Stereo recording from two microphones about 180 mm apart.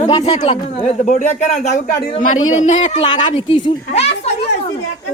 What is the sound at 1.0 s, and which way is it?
A woman's voice, 45° left (ahead or behind).